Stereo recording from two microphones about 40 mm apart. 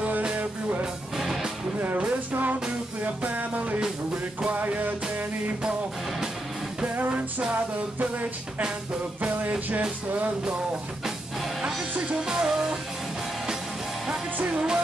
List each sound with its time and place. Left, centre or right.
0.4 s music: right
1.1 s music: centre
2.0 s music: right
8.0 s music: right
12.2 s music: centre
14.5 s music: centre